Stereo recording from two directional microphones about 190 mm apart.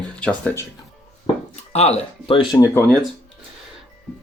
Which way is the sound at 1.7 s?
35° left (ahead or behind).